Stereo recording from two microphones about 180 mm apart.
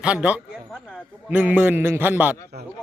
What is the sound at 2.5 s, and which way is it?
Speech, 65° right (ahead or behind).